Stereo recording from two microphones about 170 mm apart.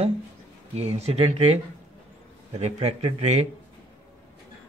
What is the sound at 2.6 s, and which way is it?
Speech, 40° right (ahead or behind).